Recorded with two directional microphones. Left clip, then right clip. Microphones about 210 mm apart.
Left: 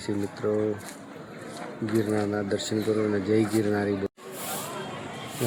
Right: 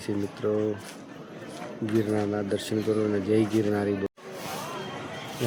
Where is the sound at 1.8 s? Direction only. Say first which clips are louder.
Even; centre (ahead or behind).